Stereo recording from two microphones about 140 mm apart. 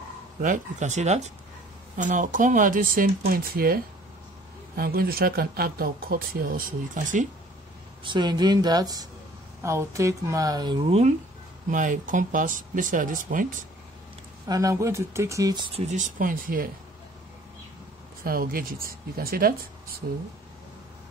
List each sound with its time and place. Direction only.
0.4 s speech: 65° right (ahead or behind)
2.0 s speech: 65° right (ahead or behind); by 6.6 s 90° right
7.0 s speech: 70° right (ahead or behind)
8.0 s speech: 35° right (ahead or behind)
10.9 s speech: 50° right (ahead or behind)
11.7 s speech: 70° right (ahead or behind)
14.5 s speech: 25° right (ahead or behind)
15.7 s speech: 55° right (ahead or behind); by 16.7 s 90° right
18.2 s speech: 90° right